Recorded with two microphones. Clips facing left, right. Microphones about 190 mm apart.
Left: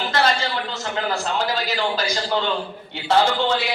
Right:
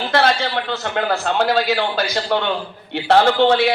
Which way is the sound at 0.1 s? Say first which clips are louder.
Right 5 dB; 60° right (ahead or behind).